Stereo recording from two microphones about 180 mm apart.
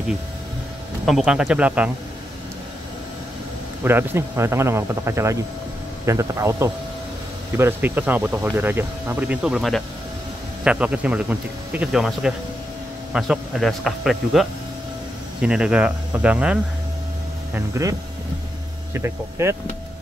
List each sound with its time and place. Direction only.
1.0 s speech: centre (ahead or behind)
3.8 s speech: 10° right (ahead or behind)
17.6 s speech: 15° right (ahead or behind)
18.9 s speech: 15° right (ahead or behind)